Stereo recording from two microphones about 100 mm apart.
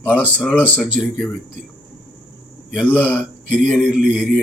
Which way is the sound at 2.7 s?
15° left (ahead or behind).